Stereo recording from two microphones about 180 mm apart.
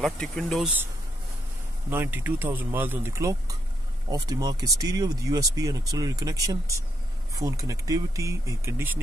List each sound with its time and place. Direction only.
0.0 s speech: centre (ahead or behind)
1.9 s speech: 10° right (ahead or behind)